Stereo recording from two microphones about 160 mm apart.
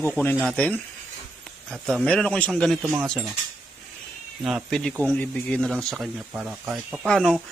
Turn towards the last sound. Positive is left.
turn(degrees=5)  # may be behind; listen again after turning